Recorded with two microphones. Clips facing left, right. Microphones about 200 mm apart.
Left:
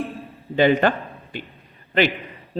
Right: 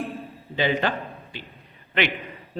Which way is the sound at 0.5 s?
50° left (ahead or behind).